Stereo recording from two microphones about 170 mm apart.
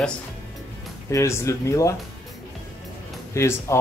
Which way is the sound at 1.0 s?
15° left (ahead or behind).